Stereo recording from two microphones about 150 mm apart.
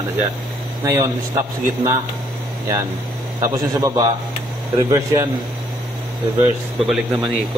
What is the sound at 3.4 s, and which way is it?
Speech, 25° right (ahead or behind).